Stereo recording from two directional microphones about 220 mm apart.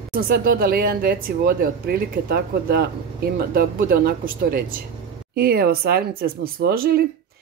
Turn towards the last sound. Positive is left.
turn(degrees=-45)  # may be behind; listen again after turning